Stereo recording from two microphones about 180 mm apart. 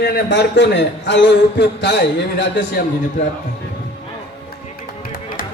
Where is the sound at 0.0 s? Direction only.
75° left (ahead or behind).